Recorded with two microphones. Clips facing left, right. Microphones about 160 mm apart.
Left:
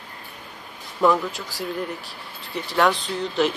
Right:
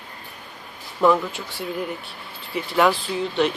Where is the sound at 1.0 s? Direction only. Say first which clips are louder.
Right 1 dB; centre (ahead or behind).